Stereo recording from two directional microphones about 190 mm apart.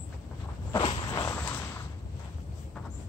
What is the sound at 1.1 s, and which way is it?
Walk, 15° left (ahead or behind).